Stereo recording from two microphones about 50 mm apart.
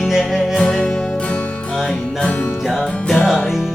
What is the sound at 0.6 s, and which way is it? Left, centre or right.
Music, centre.